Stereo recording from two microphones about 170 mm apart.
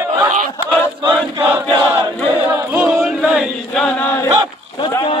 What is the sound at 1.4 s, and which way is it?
Chant, 10° right (ahead or behind).